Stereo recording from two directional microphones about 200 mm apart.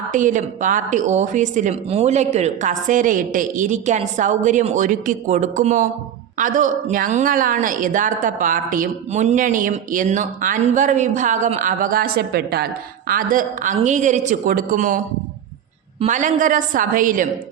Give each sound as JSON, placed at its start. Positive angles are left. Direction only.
{"t": 0.1, "sound": "a woman's voice", "side_deg": -40}